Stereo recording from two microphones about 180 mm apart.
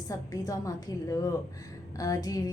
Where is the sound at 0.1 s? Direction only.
20° left (ahead or behind).